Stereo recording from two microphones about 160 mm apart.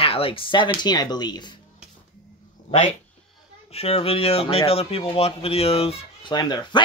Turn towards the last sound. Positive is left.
turn(degrees=30)  # may be behind; listen again after turning